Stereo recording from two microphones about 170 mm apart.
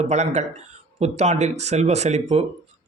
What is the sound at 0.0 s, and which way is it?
Speech, 40° right (ahead or behind).